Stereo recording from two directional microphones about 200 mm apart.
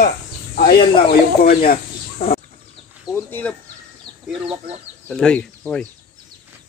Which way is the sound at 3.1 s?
10° left (ahead or behind).